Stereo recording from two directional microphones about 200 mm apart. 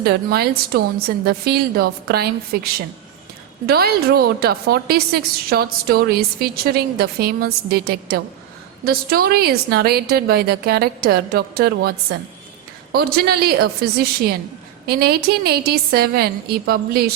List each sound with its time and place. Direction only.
0.0 s a woman's voice: 50° right (ahead or behind)
3.7 s a woman's voice: 50° right (ahead or behind)